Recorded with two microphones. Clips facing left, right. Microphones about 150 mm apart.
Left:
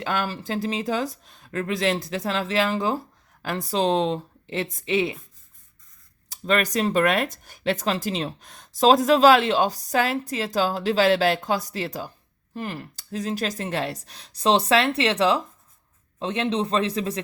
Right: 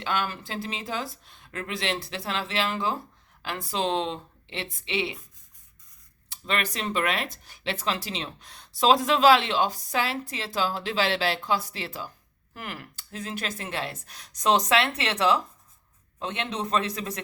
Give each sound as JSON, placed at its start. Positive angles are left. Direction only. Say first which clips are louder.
{"t": 0.0, "sound": "speech", "louder": "left 2 dB", "side_deg": 40}
{"t": 6.2, "sound": "speech", "louder": "left 7 dB", "side_deg": 40}
{"t": 12.5, "sound": "speech", "louder": "left 6 dB", "side_deg": 30}